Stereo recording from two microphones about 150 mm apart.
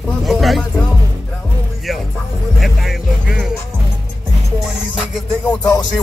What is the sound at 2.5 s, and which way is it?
Music, centre (ahead or behind).